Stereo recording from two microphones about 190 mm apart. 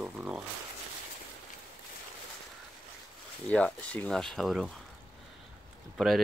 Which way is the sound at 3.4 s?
5° left (ahead or behind).